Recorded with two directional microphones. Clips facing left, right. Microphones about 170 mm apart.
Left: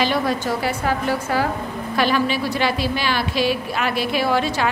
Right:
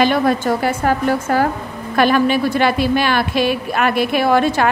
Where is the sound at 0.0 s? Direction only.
55° right (ahead or behind).